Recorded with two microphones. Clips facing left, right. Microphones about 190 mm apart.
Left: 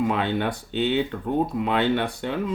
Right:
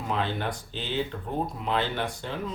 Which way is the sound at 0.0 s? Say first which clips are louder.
Left 6 dB; 65° left (ahead or behind).